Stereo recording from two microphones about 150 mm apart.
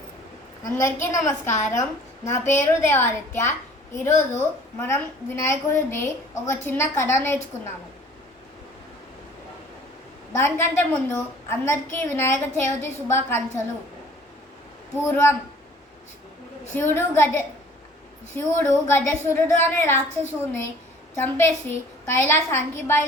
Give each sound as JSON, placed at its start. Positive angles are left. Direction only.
{"t": 0.8, "sound": "a woman's voice", "side_deg": 20}
{"t": 1.5, "sound": "a woman's voice", "side_deg": 55}
{"t": 2.2, "sound": "a woman's voice", "side_deg": 15}
{"t": 10.3, "sound": "a woman's voice", "side_deg": 15}
{"t": 15.0, "sound": "a woman's voice", "side_deg": 15}
{"t": 16.7, "sound": "a woman's voice", "side_deg": 15}
{"t": 21.2, "sound": "a woman's voice", "side_deg": 15}